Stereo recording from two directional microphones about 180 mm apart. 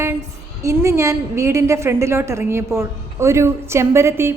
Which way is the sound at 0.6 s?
15° right (ahead or behind).